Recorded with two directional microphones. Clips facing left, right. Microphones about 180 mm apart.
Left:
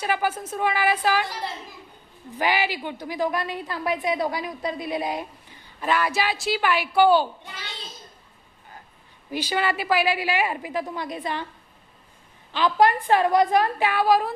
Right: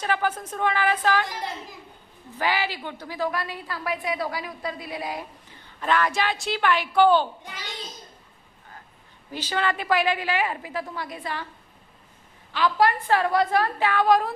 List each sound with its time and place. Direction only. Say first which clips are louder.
0.0 s a woman's voice: left 1 dB; 10° left (ahead or behind)
2.4 s a woman's voice: left 2 dB; 15° left (ahead or behind)
5.8 s a woman's voice: even; 10° left (ahead or behind)
9.3 s a woman's voice: left 2 dB; 10° left (ahead or behind)
12.5 s a woman's voice: left 2 dB; 20° left (ahead or behind); by 14.3 s 5° left (ahead or behind)